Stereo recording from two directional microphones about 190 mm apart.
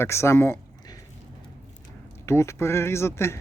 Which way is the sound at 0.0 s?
15° left (ahead or behind).